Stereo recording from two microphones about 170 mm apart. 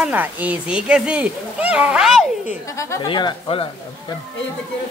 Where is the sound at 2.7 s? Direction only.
20° left (ahead or behind).